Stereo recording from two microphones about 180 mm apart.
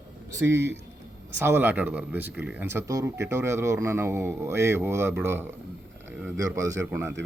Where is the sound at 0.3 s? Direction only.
15° right (ahead or behind).